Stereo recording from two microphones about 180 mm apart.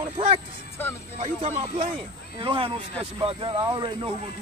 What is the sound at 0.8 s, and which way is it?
Speech, 10° left (ahead or behind).